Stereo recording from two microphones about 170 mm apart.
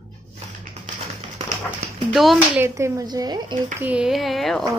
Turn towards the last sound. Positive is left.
turn(degrees=0)  # may be behind; listen again after turning